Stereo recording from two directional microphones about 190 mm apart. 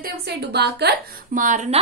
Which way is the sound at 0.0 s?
60° right (ahead or behind).